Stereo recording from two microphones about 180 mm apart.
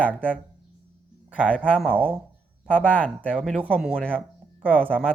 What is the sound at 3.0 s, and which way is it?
Speech, 5° left (ahead or behind).